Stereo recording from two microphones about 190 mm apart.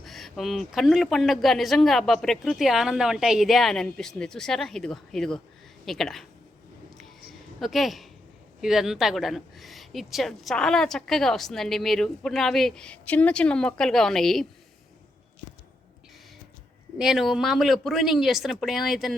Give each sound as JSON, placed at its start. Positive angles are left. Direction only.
{"t": 0.0, "sound": "a woman's voice", "side_deg": 0}
{"t": 7.6, "sound": "a woman's voice", "side_deg": 0}
{"t": 17.0, "sound": "a woman's voice", "side_deg": 0}